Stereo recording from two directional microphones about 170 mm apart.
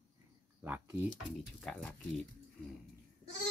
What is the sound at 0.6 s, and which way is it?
Speech, 10° right (ahead or behind).